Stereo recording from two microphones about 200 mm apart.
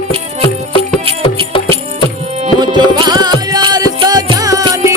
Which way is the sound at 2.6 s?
20° right (ahead or behind).